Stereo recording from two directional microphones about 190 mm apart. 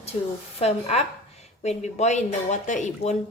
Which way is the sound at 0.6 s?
35° left (ahead or behind).